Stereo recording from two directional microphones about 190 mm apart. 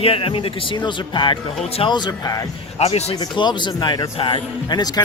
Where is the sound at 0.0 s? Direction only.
30° left (ahead or behind).